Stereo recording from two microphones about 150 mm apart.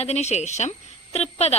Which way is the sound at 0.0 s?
45° left (ahead or behind).